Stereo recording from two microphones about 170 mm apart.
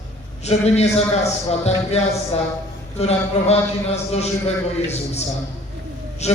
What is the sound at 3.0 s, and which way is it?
Speech, 40° left (ahead or behind).